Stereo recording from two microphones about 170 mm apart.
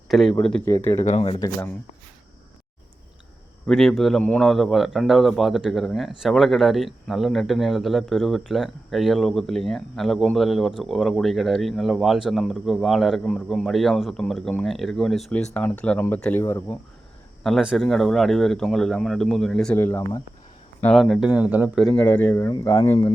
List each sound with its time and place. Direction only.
0.1 s speech: centre (ahead or behind)
0.6 s speech: 20° left (ahead or behind)
0.9 s speech: 40° left (ahead or behind)
3.7 s speech: centre (ahead or behind)
17.4 s speech: centre (ahead or behind)
21.8 s speech: 10° left (ahead or behind); by 23.1 s 25° left (ahead or behind)